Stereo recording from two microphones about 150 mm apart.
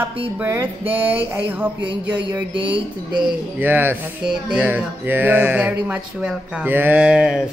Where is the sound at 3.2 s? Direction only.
10° right (ahead or behind).